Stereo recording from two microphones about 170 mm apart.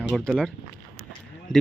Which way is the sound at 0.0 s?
5° right (ahead or behind).